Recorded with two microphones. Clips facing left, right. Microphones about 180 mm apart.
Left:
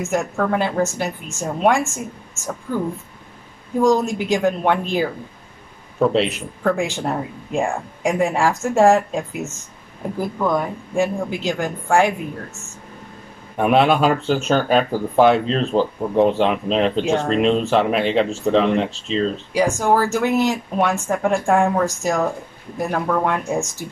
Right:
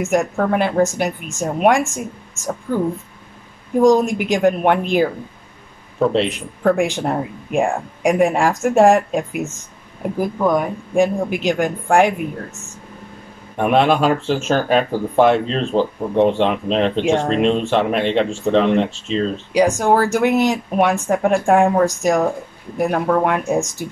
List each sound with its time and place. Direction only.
0.0 s speech: 15° right (ahead or behind)
3.8 s speech: 15° right (ahead or behind)
5.9 s speech: centre (ahead or behind)
6.6 s speech: 15° right (ahead or behind)
13.6 s speech: centre (ahead or behind)
19.5 s speech: 15° right (ahead or behind)